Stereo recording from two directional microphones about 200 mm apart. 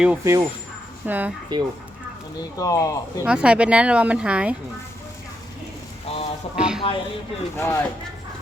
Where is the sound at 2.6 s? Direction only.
15° left (ahead or behind).